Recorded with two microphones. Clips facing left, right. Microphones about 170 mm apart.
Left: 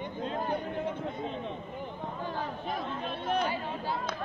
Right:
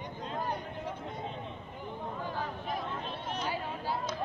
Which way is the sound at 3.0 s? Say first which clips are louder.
Left 6 dB; 60° left (ahead or behind).